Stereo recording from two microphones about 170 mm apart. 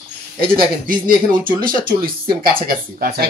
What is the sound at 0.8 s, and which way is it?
Speech, 55° right (ahead or behind).